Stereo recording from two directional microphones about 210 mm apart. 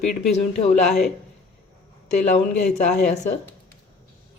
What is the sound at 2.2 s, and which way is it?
A woman's voice, 35° left (ahead or behind).